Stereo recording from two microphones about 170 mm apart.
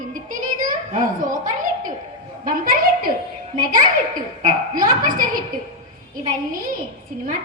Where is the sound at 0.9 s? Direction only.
50° right (ahead or behind).